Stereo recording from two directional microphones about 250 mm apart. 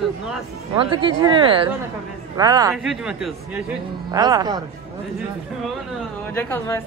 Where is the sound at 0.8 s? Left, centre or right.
Centre.